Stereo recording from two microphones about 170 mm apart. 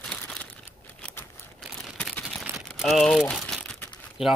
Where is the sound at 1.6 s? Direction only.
Centre (ahead or behind).